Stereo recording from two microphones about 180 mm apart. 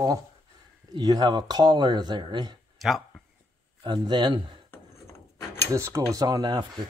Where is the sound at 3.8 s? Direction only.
25° right (ahead or behind).